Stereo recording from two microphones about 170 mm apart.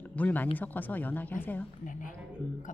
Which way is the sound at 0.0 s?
10° left (ahead or behind).